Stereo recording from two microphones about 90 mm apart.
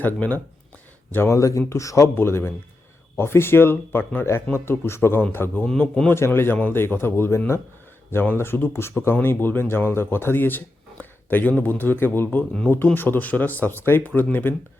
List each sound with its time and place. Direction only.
0.0 s speech: 20° left (ahead or behind)
1.1 s speech: 30° left (ahead or behind)
5.6 s a man's voice: 10° left (ahead or behind)
6.1 s speech: 25° left (ahead or behind)